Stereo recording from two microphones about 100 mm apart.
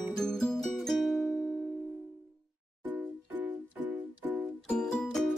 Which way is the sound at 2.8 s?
20° right (ahead or behind).